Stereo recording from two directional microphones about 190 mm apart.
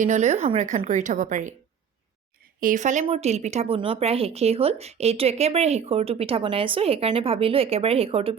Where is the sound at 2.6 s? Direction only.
45° right (ahead or behind).